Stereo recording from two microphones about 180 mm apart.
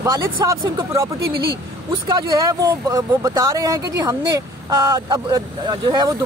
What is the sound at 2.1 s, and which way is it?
Speech, 20° right (ahead or behind).